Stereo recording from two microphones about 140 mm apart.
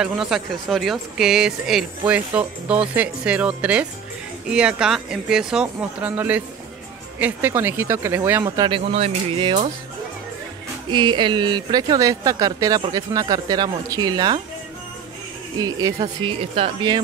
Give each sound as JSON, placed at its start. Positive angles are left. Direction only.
{"t": 0.0, "sound": "speech", "side_deg": -5}
{"t": 8.6, "sound": "speech", "side_deg": -40}
{"t": 10.9, "sound": "speech", "side_deg": -35}
{"t": 15.6, "sound": "speech", "side_deg": -30}